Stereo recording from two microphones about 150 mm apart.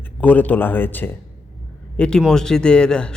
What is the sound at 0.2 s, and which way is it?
A man's voice, 10° left (ahead or behind).